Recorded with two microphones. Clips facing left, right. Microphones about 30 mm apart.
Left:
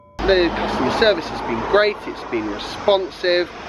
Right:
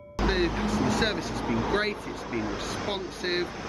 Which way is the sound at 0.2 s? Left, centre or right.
Left.